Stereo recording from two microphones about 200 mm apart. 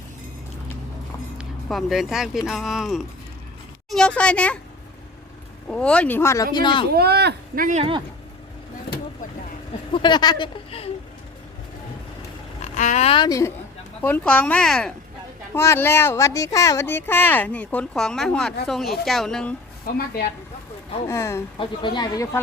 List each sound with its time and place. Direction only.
1.6 s speech: centre (ahead or behind)
5.6 s speech: 5° left (ahead or behind); by 6.8 s 20° left (ahead or behind)
6.9 s speech: 55° right (ahead or behind); by 8.0 s 30° right (ahead or behind)
9.9 s speech: 20° left (ahead or behind)
12.7 s speech: 35° left (ahead or behind); by 19.5 s 5° left (ahead or behind)
21.1 s speech: 15° left (ahead or behind)